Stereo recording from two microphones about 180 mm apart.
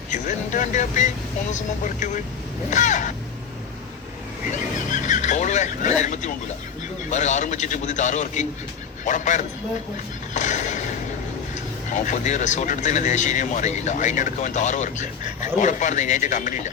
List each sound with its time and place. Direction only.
0.1 s a man's voice: 45° left (ahead or behind)
4.9 s a man's voice: 45° left (ahead or behind)
10.3 s a sound: 40° left (ahead or behind)
11.9 s a man's voice: 45° left (ahead or behind)